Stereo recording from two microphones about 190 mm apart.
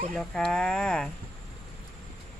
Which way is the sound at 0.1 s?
5° left (ahead or behind).